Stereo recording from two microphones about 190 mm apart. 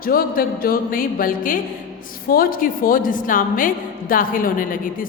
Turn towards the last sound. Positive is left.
turn(degrees=45)  # may be behind; listen again after turning